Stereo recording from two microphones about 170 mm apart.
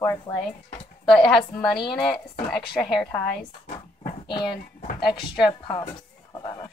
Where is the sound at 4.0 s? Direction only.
30° left (ahead or behind).